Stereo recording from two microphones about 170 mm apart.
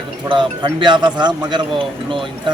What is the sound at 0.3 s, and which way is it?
A man's voice, 25° right (ahead or behind).